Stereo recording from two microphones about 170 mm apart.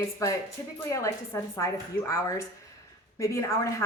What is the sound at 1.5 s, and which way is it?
Speech, 15° left (ahead or behind).